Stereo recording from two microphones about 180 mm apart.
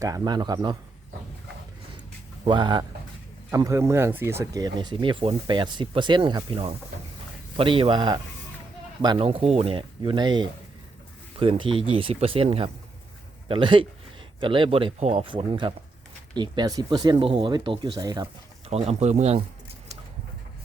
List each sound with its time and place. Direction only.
0.0 s speech: 20° right (ahead or behind)
2.5 s speech: 25° right (ahead or behind)
18.7 s speech: 35° right (ahead or behind)